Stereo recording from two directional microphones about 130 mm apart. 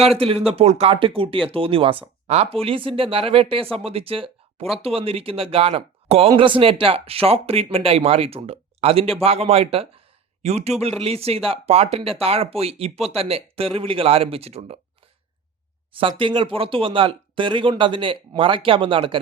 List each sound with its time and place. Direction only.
0.0 s speech: 50° right (ahead or behind)
15.9 s speech: 40° right (ahead or behind)